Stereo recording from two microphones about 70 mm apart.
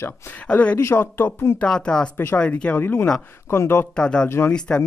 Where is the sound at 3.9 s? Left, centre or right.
Centre.